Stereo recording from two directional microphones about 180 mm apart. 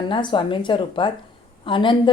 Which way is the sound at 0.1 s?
25° left (ahead or behind).